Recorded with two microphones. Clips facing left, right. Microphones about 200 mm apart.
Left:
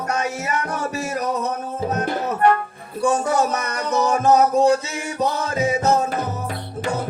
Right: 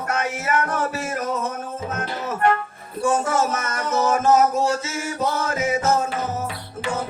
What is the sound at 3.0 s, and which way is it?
Speech, 15° left (ahead or behind).